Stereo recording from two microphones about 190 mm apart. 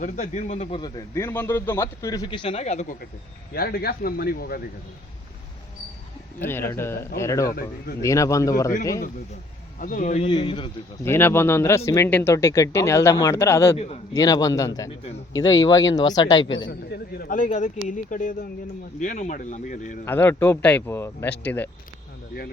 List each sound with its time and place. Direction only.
0.0 s speech: 40° left (ahead or behind)
0.8 s a man's voice: 20° left (ahead or behind); by 2.9 s 35° left (ahead or behind)
3.5 s speech: 55° left (ahead or behind)
6.4 s a man's voice: 10° left (ahead or behind)
9.8 s speech: 45° left (ahead or behind)
10.2 s a man's voice: 25° left (ahead or behind)
11.0 s a man's voice: 10° left (ahead or behind)
13.7 s speech: 35° left (ahead or behind)
14.1 s a man's voice: 20° left (ahead or behind)
17.2 s speech: 45° left (ahead or behind)
20.1 s a man's voice: 10° left (ahead or behind)